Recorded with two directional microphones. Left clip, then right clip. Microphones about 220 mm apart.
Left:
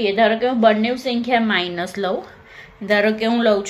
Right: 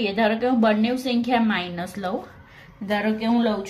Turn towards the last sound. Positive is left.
turn(degrees=10)  # may be behind; listen again after turning